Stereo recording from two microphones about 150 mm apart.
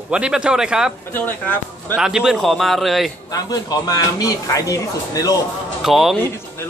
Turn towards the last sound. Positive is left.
turn(degrees=0)  # may be behind; listen again after turning